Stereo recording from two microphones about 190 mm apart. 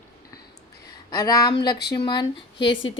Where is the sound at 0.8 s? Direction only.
20° left (ahead or behind).